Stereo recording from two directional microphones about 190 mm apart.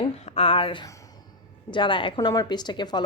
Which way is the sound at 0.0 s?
30° left (ahead or behind).